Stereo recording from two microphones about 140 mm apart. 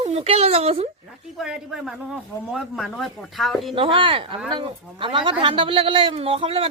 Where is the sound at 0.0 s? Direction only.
45° right (ahead or behind).